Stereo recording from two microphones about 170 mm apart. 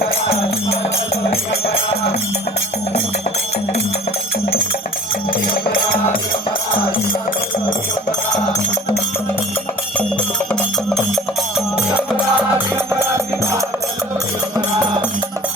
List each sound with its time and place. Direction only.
5.3 s music: 55° left (ahead or behind)
10.5 s music: centre (ahead or behind); by 13.6 s 15° right (ahead or behind)